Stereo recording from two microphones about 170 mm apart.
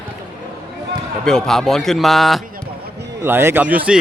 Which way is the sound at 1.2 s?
5° left (ahead or behind).